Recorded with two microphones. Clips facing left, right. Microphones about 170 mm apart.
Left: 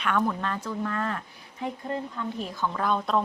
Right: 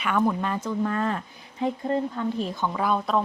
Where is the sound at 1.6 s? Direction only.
30° right (ahead or behind).